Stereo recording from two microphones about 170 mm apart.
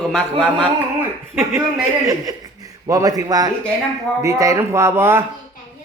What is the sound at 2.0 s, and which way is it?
A man's voice, 20° right (ahead or behind).